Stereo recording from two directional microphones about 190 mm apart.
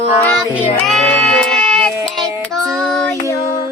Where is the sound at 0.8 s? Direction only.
Centre (ahead or behind).